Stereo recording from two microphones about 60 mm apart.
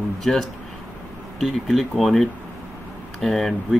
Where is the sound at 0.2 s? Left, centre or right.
Centre.